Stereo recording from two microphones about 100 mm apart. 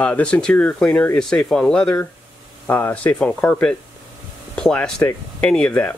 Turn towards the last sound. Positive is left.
turn(degrees=10)  # may be behind; listen again after turning